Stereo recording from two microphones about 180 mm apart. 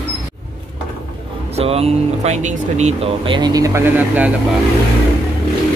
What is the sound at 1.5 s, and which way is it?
Speech, 35° right (ahead or behind).